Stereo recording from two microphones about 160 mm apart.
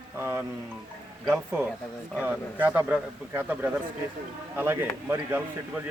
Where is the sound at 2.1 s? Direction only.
10° right (ahead or behind).